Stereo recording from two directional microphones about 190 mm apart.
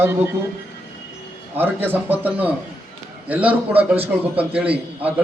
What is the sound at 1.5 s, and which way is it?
A man's voice, 10° right (ahead or behind).